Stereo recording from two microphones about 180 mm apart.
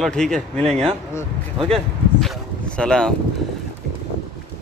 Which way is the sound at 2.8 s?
5° left (ahead or behind).